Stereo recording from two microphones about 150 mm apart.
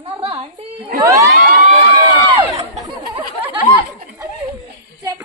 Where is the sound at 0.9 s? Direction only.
20° right (ahead or behind).